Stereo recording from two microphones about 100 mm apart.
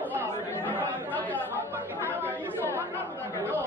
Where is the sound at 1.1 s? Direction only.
15° left (ahead or behind).